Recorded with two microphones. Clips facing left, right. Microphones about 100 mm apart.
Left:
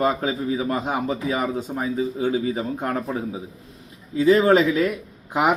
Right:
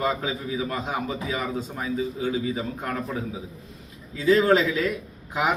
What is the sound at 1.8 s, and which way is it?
A man's voice, 30° left (ahead or behind).